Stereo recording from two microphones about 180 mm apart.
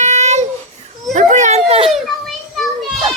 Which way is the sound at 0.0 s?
40° right (ahead or behind).